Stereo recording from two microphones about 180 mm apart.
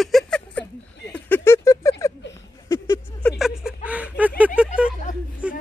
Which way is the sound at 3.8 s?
10° right (ahead or behind).